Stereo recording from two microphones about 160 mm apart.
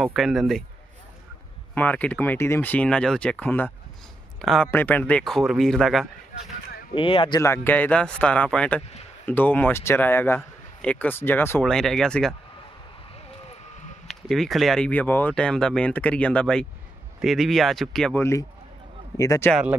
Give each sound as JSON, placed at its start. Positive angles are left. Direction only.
{"t": 0.0, "sound": "speech", "side_deg": 0}
{"t": 1.8, "sound": "speech", "side_deg": 10}
{"t": 7.0, "sound": "speech", "side_deg": 35}
{"t": 7.3, "sound": "speech", "side_deg": 15}
{"t": 11.7, "sound": "speech", "side_deg": 5}
{"t": 14.0, "sound": "speech", "side_deg": 0}
{"t": 19.1, "sound": "speech", "side_deg": 20}